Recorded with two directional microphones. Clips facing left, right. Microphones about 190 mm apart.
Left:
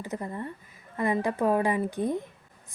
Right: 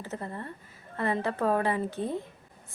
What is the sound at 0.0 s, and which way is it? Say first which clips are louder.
A woman's voice: left 3 dB; 15° left (ahead or behind).